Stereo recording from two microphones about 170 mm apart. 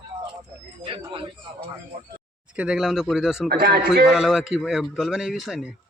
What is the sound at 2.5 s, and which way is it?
Speech, 5° right (ahead or behind).